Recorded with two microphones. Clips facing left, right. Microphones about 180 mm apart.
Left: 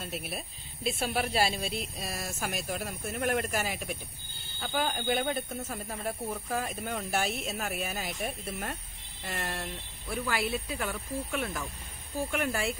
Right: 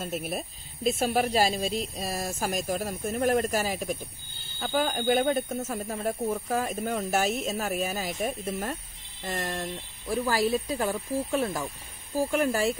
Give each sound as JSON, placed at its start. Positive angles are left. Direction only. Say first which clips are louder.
{"t": 0.0, "sound": "speech", "louder": "right 6 dB", "side_deg": -45}